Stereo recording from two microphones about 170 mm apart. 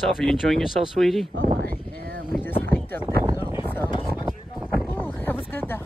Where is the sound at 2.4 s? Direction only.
10° left (ahead or behind).